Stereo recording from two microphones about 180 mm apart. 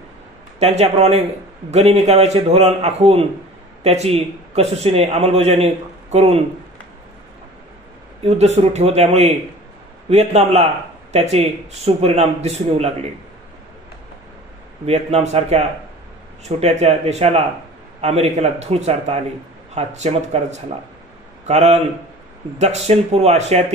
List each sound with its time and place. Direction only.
0.6 s speech: 40° right (ahead or behind)
8.2 s speech: 35° right (ahead or behind)
14.9 s speech: 35° right (ahead or behind)